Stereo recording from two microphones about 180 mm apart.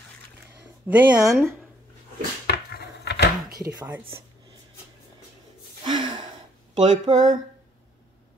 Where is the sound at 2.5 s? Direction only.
65° left (ahead or behind).